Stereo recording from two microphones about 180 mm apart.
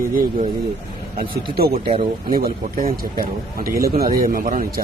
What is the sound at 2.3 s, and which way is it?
Speech, 50° right (ahead or behind).